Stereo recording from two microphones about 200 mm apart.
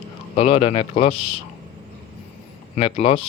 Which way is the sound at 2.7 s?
30° left (ahead or behind).